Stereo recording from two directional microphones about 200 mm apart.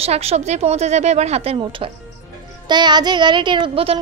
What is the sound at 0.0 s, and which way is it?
A woman's voice, 30° right (ahead or behind).